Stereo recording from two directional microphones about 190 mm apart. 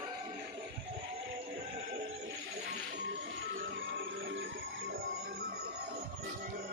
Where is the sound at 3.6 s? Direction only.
80° right.